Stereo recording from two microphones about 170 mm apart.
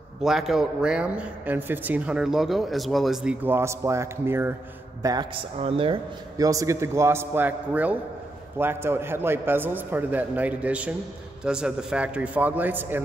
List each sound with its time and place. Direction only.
0.2 s speech: centre (ahead or behind)
3.4 s a man's voice: 15° right (ahead or behind)
5.0 s a man's voice: 25° right (ahead or behind)
6.4 s a man's voice: 20° right (ahead or behind)